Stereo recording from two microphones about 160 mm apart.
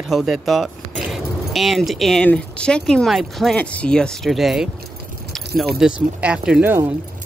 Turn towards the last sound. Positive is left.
turn(degrees=-10)  # may be behind; listen again after turning